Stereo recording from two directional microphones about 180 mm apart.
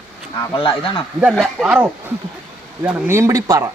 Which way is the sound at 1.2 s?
Centre (ahead or behind).